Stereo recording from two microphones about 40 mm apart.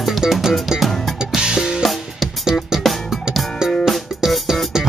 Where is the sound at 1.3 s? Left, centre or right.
Centre.